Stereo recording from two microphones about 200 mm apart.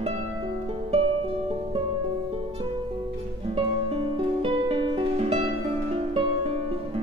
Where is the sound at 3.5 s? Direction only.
25° right (ahead or behind).